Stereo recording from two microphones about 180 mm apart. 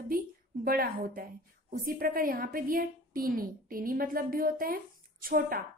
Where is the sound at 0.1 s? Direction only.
50° right (ahead or behind).